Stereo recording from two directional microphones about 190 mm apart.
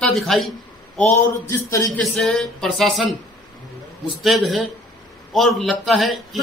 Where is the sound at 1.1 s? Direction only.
15° left (ahead or behind).